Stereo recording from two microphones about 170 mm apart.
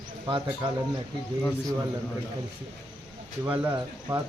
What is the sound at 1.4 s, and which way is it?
Speech, 10° left (ahead or behind).